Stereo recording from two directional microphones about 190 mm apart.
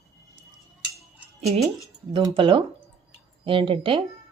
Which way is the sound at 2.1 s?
25° right (ahead or behind).